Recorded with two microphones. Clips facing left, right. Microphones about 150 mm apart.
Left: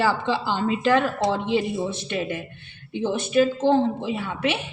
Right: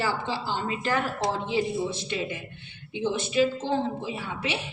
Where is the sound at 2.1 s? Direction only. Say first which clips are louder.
Left 4 dB; 55° left (ahead or behind).